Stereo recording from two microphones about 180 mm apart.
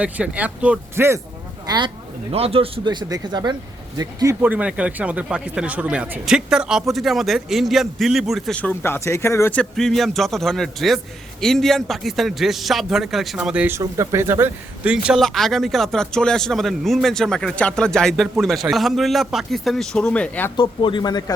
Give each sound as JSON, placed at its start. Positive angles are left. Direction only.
{"t": 0.0, "sound": "speech", "side_deg": -5}
{"t": 20.6, "sound": "a man's voice", "side_deg": 25}